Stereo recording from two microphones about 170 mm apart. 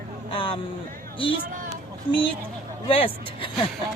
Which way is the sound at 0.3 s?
30° left (ahead or behind).